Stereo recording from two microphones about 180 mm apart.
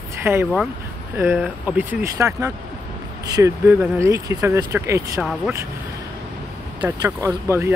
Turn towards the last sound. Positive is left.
turn(degrees=-15)  # may be behind; listen again after turning